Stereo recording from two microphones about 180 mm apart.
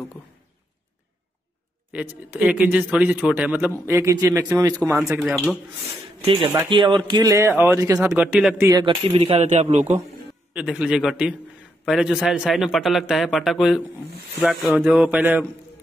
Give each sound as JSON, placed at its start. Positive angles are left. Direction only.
{"t": 1.9, "sound": "speech", "side_deg": -5}
{"t": 6.5, "sound": "speech", "side_deg": -20}
{"t": 8.6, "sound": "speech", "side_deg": -25}
{"t": 10.5, "sound": "a man's voice", "side_deg": -5}